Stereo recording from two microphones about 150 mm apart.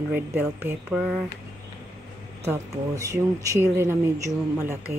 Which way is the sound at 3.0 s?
20° right (ahead or behind).